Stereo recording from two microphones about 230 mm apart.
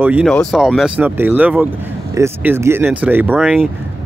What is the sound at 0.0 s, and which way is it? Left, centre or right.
Speech, centre.